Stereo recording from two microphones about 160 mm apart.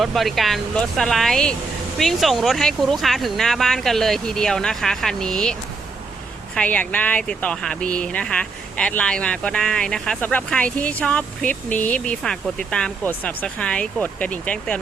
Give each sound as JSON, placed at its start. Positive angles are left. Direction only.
{"t": 0.0, "sound": "speech", "side_deg": 0}